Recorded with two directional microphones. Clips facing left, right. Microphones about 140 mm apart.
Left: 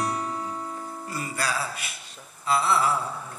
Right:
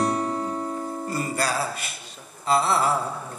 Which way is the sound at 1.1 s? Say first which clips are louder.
Right 3 dB; 35° right (ahead or behind).